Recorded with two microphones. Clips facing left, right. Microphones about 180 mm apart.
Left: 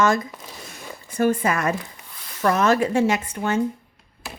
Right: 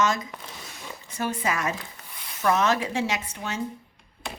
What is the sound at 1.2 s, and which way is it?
Speech, 50° left (ahead or behind).